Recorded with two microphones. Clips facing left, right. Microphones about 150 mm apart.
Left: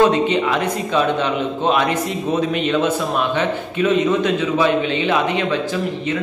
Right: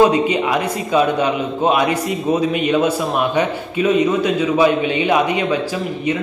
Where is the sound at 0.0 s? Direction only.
10° right (ahead or behind).